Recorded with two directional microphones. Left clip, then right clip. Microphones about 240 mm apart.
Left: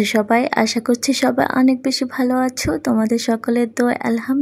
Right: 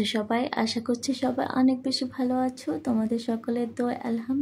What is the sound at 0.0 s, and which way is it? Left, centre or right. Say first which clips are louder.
Speech: left 11 dB; left.